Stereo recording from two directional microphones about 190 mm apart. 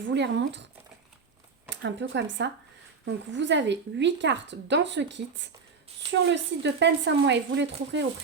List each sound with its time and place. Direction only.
0.0 s speech: 65° right (ahead or behind)
1.7 s speech: 70° right (ahead or behind)